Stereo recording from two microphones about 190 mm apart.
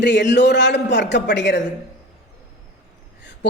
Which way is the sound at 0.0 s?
65° left (ahead or behind).